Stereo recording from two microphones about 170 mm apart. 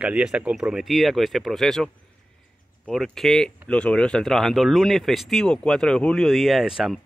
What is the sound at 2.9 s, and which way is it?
Speech, centre (ahead or behind).